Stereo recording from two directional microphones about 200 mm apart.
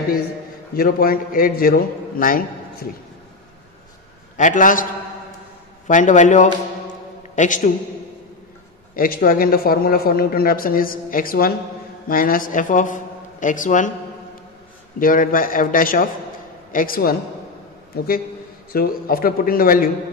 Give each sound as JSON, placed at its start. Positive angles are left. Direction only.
{"t": 0.7, "sound": "a man's voice", "side_deg": 50}
{"t": 4.4, "sound": "a man's voice", "side_deg": 40}
{"t": 5.9, "sound": "a man's voice", "side_deg": 40}
{"t": 8.9, "sound": "a man's voice", "side_deg": 45}
{"t": 15.0, "sound": "a man's voice", "side_deg": 45}